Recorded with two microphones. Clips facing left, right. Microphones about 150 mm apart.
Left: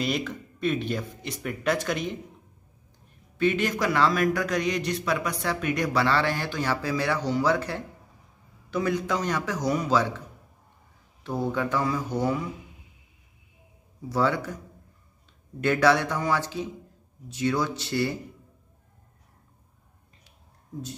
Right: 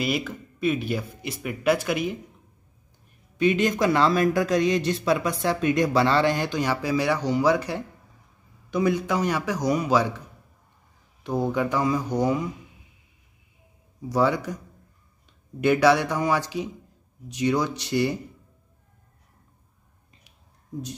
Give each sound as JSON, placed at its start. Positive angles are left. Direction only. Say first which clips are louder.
{"t": 0.0, "sound": "speech", "louder": "right 1 dB", "side_deg": -5}
{"t": 3.3, "sound": "a man's voice", "louder": "right 3 dB", "side_deg": -20}
{"t": 11.2, "sound": "speech", "louder": "right 3 dB", "side_deg": -15}
{"t": 14.0, "sound": "speech", "louder": "right 3 dB", "side_deg": -15}
{"t": 15.6, "sound": "speech", "louder": "right 3 dB", "side_deg": -15}